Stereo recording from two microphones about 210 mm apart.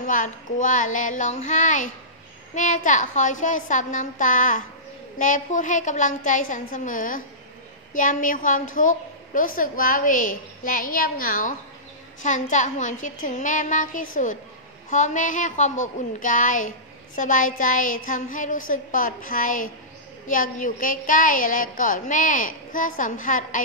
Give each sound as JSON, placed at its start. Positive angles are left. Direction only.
{"t": 0.0, "sound": "a woman's voice", "side_deg": 40}